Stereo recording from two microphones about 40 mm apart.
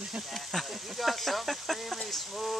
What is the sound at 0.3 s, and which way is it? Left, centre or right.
Speech, centre.